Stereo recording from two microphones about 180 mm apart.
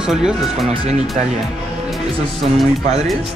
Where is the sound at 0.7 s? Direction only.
40° right (ahead or behind).